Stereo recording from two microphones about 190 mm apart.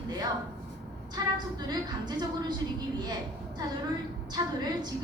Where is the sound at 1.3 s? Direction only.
20° right (ahead or behind).